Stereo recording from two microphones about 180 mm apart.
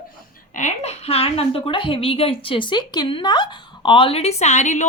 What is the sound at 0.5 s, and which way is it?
A woman's voice, 40° left (ahead or behind).